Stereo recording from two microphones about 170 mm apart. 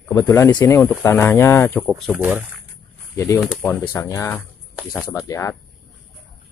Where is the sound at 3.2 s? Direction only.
20° left (ahead or behind).